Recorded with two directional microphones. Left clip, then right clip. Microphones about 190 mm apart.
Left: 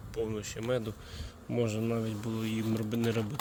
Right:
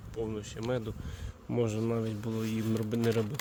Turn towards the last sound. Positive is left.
turn(degrees=-30)  # may be behind; listen again after turning